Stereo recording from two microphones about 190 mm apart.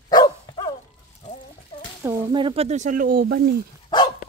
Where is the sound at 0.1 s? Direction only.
20° left (ahead or behind).